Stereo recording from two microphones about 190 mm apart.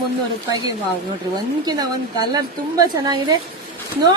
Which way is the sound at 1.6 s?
20° right (ahead or behind).